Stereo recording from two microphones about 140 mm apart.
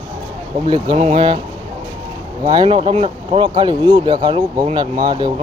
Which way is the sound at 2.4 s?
30° right (ahead or behind).